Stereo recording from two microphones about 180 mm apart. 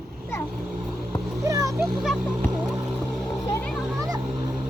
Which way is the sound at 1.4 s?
20° right (ahead or behind).